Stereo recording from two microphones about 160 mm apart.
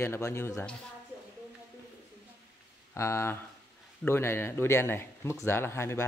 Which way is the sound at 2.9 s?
15° left (ahead or behind).